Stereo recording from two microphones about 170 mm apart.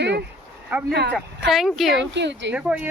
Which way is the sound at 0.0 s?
90° right.